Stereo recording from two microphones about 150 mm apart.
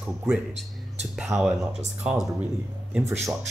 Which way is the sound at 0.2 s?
5° right (ahead or behind).